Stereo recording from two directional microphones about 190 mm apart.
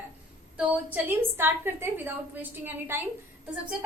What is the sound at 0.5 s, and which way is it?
A woman's voice, 5° right (ahead or behind).